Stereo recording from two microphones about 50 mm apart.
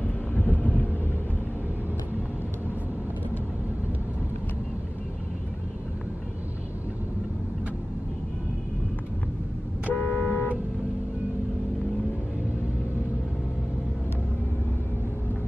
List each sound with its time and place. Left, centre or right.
0.0 s vehicle: left
9.9 s vehicle: left